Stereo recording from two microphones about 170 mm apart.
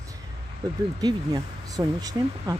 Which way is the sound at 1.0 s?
25° right (ahead or behind).